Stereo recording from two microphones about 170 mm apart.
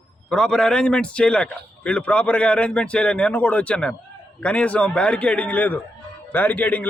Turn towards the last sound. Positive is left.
turn(degrees=10)  # may be behind; listen again after turning